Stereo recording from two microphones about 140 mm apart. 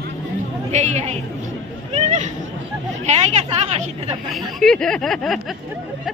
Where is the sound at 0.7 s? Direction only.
55° right (ahead or behind).